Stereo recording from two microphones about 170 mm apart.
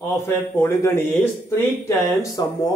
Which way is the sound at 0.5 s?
15° left (ahead or behind).